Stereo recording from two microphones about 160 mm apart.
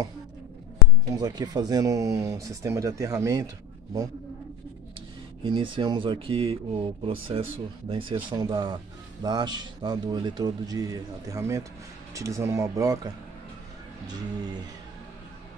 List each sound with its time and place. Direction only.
1.1 s a man's voice: 25° right (ahead or behind)
5.4 s a man's voice: 30° right (ahead or behind)